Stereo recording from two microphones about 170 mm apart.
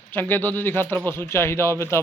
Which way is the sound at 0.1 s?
10° left (ahead or behind).